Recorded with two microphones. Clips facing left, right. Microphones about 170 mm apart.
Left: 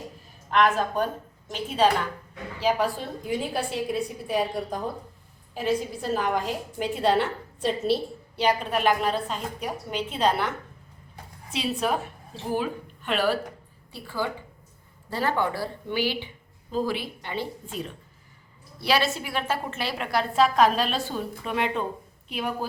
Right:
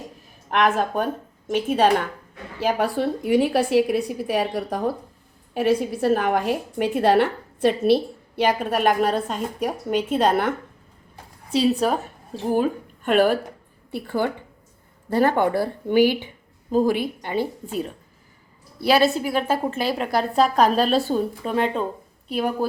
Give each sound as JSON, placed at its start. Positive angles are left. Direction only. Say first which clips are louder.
{"t": 0.5, "sound": "a woman's voice", "louder": "right 2 dB", "side_deg": -55}
{"t": 8.4, "sound": "a woman's voice", "louder": "right 3 dB", "side_deg": -50}
{"t": 11.5, "sound": "a woman's voice", "louder": "right 7 dB", "side_deg": -35}